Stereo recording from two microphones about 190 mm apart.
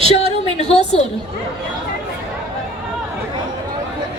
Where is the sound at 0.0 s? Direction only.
30° right (ahead or behind).